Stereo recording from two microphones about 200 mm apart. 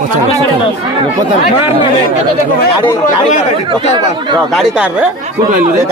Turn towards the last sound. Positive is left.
turn(degrees=-5)  # may be behind; listen again after turning